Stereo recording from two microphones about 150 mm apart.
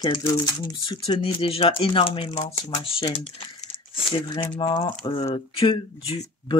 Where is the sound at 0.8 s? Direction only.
35° left (ahead or behind).